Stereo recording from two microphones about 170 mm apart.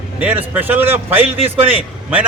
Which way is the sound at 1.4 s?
35° right (ahead or behind).